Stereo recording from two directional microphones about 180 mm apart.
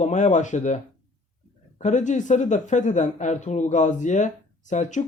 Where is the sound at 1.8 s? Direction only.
40° left (ahead or behind).